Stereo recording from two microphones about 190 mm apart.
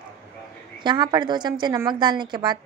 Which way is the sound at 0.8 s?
20° right (ahead or behind).